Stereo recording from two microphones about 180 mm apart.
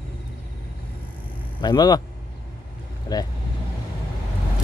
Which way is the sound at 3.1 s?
15° left (ahead or behind).